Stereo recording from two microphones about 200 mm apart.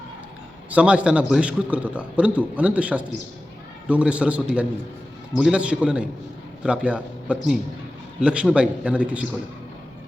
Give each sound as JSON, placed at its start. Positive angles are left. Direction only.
{"t": 0.7, "sound": "a man's voice", "side_deg": -5}